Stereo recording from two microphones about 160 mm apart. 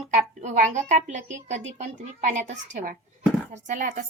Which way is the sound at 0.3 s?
50° right (ahead or behind).